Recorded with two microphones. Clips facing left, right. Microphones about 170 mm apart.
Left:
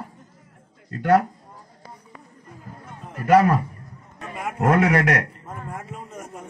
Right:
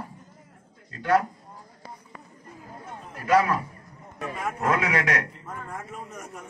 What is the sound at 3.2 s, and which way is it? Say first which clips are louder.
Speech: left 5 dB; 45° left (ahead or behind).